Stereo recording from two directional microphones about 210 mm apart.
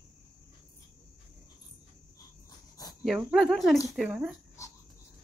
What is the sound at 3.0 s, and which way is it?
Speech, 5° right (ahead or behind).